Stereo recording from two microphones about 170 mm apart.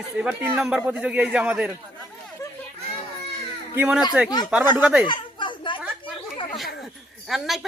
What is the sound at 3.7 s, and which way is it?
A man's voice, 10° right (ahead or behind).